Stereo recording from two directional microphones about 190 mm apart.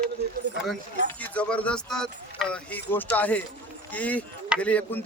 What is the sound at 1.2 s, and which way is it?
Speech, 5° left (ahead or behind).